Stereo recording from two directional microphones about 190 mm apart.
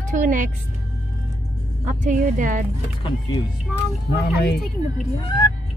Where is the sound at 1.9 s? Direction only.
45° right (ahead or behind).